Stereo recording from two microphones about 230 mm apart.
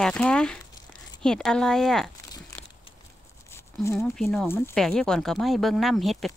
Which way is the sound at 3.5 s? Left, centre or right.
Centre.